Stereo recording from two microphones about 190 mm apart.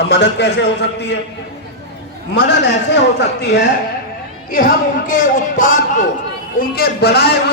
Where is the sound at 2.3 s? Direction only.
65° left (ahead or behind).